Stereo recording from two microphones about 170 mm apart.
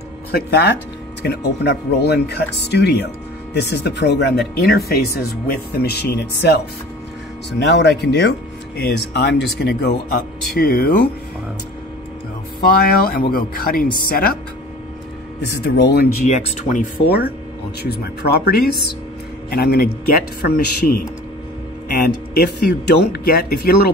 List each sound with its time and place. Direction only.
0.3 s speech: 80° left
7.5 s speech: 90° left
8.7 s speech: 75° left (ahead or behind)
10.5 s speech: 65° left (ahead or behind)
12.5 s speech: 60° left (ahead or behind)
15.5 s speech: 80° left
16.3 s speech: 45° left (ahead or behind)
17.0 s speech: 65° left (ahead or behind)